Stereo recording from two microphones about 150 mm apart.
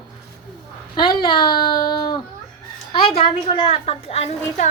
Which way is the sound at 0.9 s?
30° left (ahead or behind).